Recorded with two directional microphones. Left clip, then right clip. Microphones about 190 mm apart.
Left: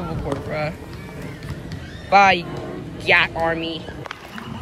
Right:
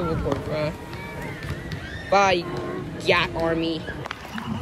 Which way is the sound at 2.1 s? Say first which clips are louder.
Left 5 dB; 10° right (ahead or behind).